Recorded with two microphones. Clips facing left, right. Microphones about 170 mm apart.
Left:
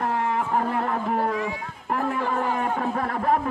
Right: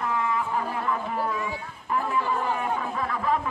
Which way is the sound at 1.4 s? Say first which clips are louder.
Left 3 dB; 60° left (ahead or behind).